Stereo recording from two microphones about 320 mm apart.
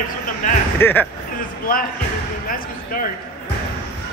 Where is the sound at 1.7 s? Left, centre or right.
Left.